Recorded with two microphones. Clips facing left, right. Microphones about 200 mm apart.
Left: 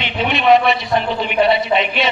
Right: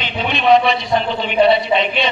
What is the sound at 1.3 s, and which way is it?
Speech, 5° left (ahead or behind).